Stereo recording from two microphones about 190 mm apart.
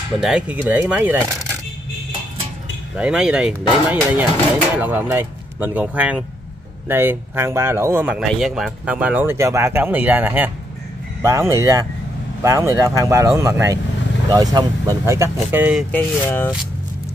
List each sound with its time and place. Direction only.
0.2 s speech: 5° right (ahead or behind)
3.0 s speech: 5° right (ahead or behind)
15.9 s speech: 10° left (ahead or behind)